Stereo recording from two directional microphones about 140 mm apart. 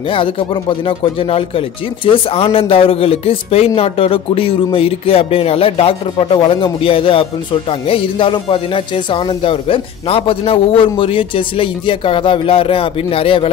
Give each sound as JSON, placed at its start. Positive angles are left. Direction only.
{"t": 0.1, "sound": "speech", "side_deg": 40}